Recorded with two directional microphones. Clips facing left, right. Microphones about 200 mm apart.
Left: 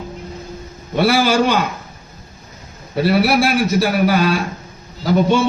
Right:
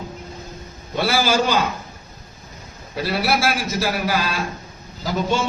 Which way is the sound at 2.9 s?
60° left (ahead or behind).